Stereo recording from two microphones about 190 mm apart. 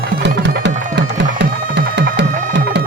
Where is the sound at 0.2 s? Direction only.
70° right (ahead or behind).